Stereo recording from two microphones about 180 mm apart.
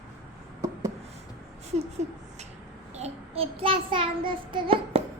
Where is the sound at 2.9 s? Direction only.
35° right (ahead or behind).